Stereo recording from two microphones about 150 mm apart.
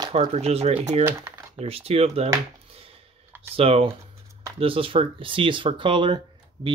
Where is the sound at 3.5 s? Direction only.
40° right (ahead or behind).